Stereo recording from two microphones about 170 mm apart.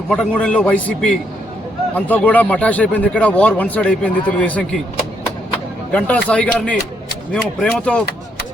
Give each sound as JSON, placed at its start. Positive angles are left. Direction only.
{"t": 0.1, "sound": "speech", "side_deg": 5}
{"t": 5.9, "sound": "speech", "side_deg": 10}